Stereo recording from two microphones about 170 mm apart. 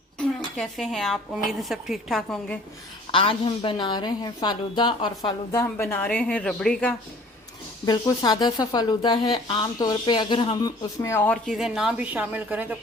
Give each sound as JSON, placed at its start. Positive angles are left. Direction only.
{"t": 0.2, "sound": "a woman's voice", "side_deg": 0}
{"t": 3.1, "sound": "speech", "side_deg": 30}
{"t": 5.7, "sound": "a woman's voice", "side_deg": 10}
{"t": 7.9, "sound": "speech", "side_deg": 25}
{"t": 11.0, "sound": "a woman's voice", "side_deg": 15}